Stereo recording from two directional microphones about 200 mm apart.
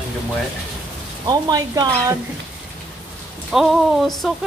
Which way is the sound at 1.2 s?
20° right (ahead or behind).